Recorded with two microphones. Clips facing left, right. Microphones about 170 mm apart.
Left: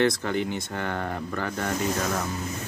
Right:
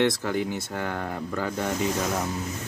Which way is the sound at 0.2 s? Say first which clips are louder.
Even; 5° right (ahead or behind).